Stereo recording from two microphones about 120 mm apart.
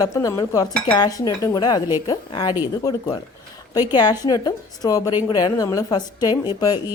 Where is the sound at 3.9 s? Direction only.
35° left (ahead or behind).